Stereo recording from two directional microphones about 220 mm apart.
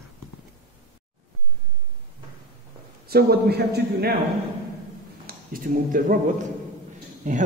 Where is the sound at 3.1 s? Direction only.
45° right (ahead or behind).